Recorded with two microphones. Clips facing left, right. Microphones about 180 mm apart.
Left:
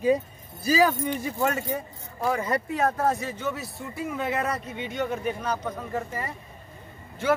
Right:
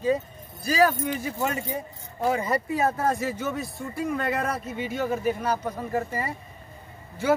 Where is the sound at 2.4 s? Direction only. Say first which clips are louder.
Right 1 dB; 5° right (ahead or behind).